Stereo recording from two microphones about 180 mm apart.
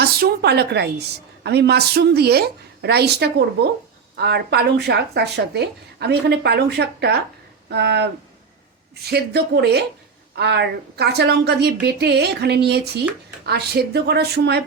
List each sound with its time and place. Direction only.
0.0 s a woman's voice: 60° right (ahead or behind)